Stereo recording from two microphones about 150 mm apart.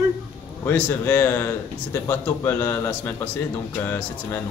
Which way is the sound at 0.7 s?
10° left (ahead or behind).